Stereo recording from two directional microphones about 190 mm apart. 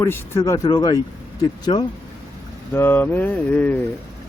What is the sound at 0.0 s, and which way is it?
Speech, 15° left (ahead or behind).